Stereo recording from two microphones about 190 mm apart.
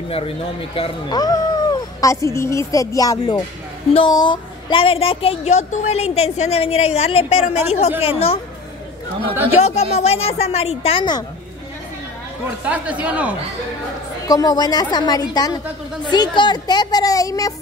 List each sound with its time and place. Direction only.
0.1 s speech: 30° left (ahead or behind)
9.6 s speech: 35° left (ahead or behind)
12.6 s speech: 5° right (ahead or behind)
14.2 s speech: 20° left (ahead or behind)